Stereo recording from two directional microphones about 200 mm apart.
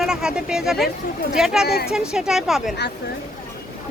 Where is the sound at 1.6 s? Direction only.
50° left (ahead or behind).